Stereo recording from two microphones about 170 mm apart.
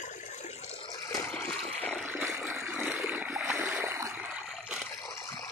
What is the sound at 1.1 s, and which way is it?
Water, 15° left (ahead or behind).